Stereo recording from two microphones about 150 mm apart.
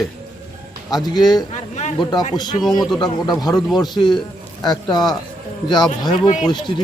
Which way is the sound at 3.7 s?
30° left (ahead or behind).